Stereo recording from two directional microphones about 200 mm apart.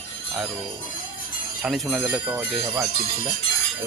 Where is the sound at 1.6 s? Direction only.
Centre (ahead or behind).